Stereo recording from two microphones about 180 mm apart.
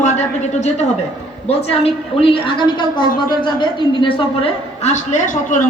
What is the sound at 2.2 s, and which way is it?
A man's voice, 30° left (ahead or behind).